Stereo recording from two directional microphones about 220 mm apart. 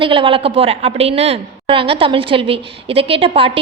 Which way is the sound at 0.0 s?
25° right (ahead or behind).